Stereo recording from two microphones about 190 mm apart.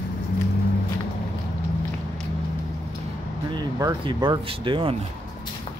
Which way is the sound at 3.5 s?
20° right (ahead or behind).